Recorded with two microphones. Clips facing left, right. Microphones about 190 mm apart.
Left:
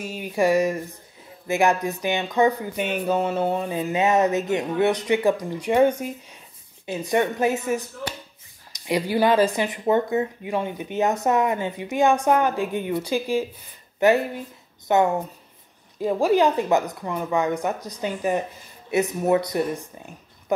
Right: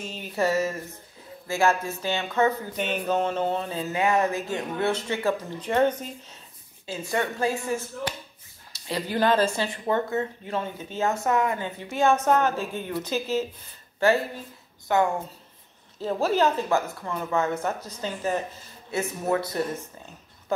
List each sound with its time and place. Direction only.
0.0 s speech: 10° left (ahead or behind)